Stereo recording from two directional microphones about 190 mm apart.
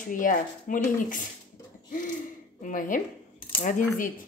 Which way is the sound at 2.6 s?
45° left (ahead or behind).